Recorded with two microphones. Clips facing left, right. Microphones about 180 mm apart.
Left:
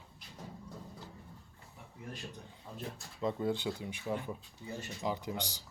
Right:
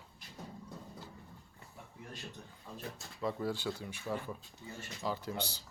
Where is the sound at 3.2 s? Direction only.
20° left (ahead or behind).